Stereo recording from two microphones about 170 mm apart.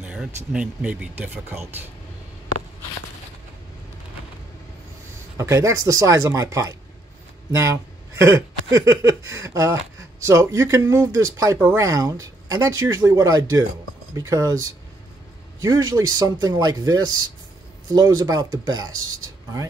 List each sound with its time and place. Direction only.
0.0 s a sound: 5° right (ahead or behind)
0.5 s speech: 5° right (ahead or behind)
5.4 s speech: 20° right (ahead or behind)